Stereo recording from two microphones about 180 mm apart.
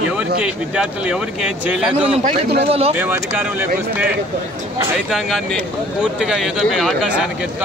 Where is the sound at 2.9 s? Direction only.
10° right (ahead or behind).